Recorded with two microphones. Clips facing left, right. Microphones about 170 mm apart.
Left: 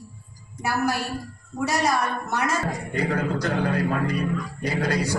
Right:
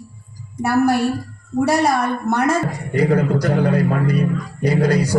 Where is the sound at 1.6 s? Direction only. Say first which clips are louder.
Right 5 dB; 55° right (ahead or behind).